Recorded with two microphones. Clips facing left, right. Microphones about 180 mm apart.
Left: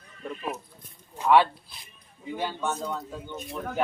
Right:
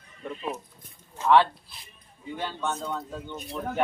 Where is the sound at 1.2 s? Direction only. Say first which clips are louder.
Even; 10° left (ahead or behind).